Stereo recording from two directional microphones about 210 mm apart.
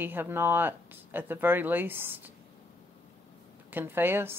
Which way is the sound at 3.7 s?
10° right (ahead or behind).